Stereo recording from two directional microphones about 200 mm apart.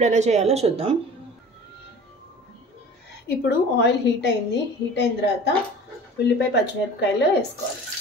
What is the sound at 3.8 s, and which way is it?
A woman's voice, 60° left (ahead or behind).